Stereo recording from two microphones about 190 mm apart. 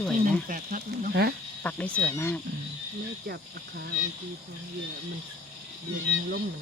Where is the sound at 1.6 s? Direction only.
10° left (ahead or behind).